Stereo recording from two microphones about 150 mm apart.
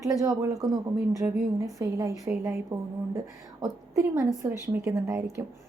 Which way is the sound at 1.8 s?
20° right (ahead or behind).